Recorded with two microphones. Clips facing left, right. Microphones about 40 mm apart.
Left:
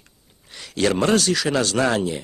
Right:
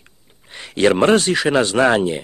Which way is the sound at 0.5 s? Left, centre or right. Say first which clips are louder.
Right 5 dB; right.